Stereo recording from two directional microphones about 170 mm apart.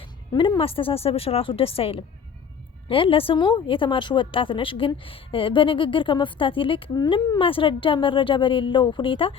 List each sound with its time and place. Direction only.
0.3 s a woman's voice: 30° left (ahead or behind)